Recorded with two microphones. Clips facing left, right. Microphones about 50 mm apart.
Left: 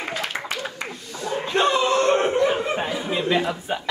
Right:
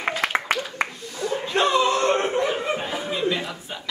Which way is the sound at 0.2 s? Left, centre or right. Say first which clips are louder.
Right 5 dB; right.